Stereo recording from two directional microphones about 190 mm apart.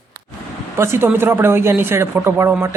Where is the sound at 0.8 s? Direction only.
15° right (ahead or behind).